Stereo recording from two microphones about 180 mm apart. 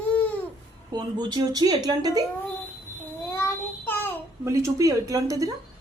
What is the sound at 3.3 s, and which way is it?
Child singing, 15° left (ahead or behind).